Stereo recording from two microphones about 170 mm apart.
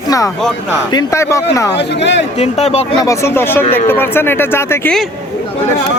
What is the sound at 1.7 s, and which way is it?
Speech, 90° left.